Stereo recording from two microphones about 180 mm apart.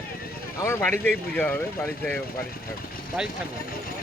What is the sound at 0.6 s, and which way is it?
Speech, 15° left (ahead or behind).